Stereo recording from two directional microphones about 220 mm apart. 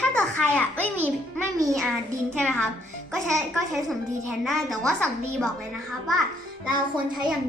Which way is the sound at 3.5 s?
Centre (ahead or behind).